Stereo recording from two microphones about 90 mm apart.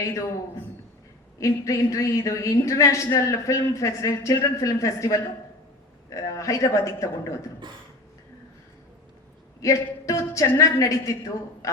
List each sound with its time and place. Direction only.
0.0 s a woman's voice: 35° left (ahead or behind)
1.4 s a woman's voice: 35° left (ahead or behind)
9.6 s a woman's voice: 35° left (ahead or behind)